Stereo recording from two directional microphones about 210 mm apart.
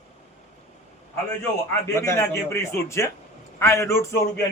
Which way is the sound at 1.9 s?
15° left (ahead or behind).